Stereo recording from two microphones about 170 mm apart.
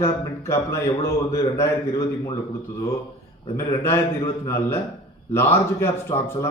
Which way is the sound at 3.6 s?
15° left (ahead or behind).